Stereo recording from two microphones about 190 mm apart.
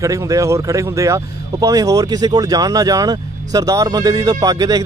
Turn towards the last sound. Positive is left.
turn(degrees=-20)  # may be behind; listen again after turning